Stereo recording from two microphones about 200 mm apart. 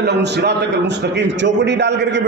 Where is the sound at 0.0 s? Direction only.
55° right (ahead or behind).